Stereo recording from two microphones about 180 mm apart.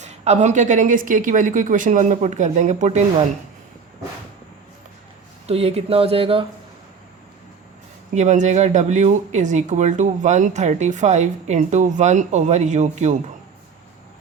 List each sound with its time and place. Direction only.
0.0 s a woman's voice: 40° right (ahead or behind)
5.5 s speech: 35° right (ahead or behind)
8.1 s speech: 40° right (ahead or behind)